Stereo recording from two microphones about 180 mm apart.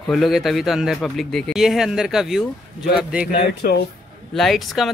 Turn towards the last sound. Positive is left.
turn(degrees=0)  # may be behind; listen again after turning